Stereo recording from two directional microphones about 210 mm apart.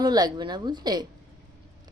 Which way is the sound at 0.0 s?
20° right (ahead or behind).